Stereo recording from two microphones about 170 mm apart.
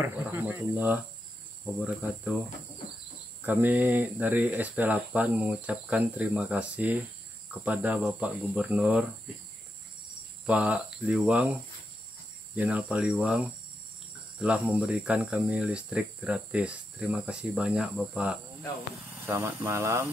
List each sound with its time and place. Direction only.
0.0 s speech: 15° right (ahead or behind)
3.4 s speech: 10° right (ahead or behind)
10.4 s speech: 5° right (ahead or behind)
12.5 s speech: 5° right (ahead or behind)